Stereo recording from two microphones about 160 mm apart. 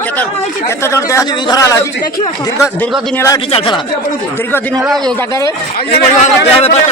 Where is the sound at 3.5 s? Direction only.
35° left (ahead or behind).